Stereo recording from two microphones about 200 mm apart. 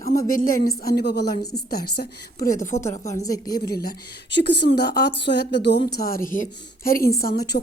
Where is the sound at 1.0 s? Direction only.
55° left (ahead or behind).